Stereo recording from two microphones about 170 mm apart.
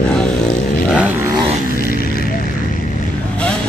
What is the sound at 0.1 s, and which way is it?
Vehicle, 5° left (ahead or behind).